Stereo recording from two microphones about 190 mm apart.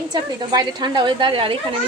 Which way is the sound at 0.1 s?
25° right (ahead or behind).